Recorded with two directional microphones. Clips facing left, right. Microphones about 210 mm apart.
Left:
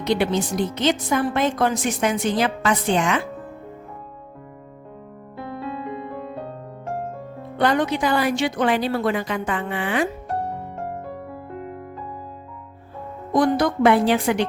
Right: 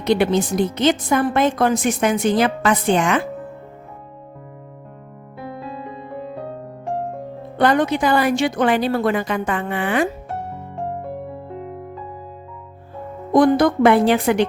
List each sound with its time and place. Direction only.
0.0 s speech: 55° right (ahead or behind)
5.4 s music: centre (ahead or behind)
7.6 s speech: 50° right (ahead or behind)
11.5 s music: centre (ahead or behind)
13.3 s a woman's voice: 55° right (ahead or behind)